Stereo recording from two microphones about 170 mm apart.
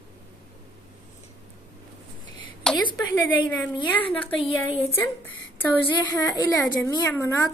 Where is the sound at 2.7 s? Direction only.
5° left (ahead or behind).